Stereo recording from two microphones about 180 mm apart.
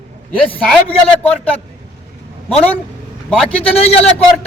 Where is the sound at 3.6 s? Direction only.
35° left (ahead or behind).